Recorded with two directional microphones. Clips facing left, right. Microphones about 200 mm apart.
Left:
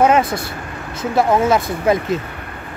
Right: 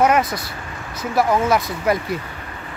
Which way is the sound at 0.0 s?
30° left (ahead or behind).